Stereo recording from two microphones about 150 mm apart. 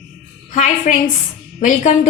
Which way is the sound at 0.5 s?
55° left (ahead or behind).